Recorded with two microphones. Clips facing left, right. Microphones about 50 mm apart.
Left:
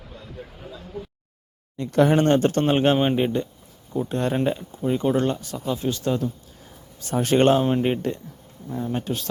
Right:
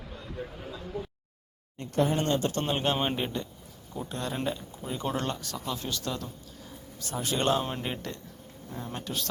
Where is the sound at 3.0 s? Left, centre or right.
Centre.